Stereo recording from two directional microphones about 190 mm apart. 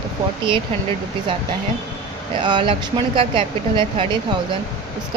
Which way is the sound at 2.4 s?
25° right (ahead or behind).